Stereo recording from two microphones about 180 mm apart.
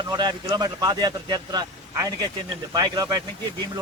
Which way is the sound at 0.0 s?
25° right (ahead or behind).